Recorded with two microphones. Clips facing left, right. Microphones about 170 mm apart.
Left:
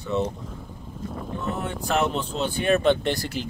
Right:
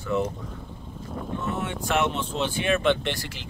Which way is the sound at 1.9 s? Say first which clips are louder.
Left 1 dB; 35° left (ahead or behind).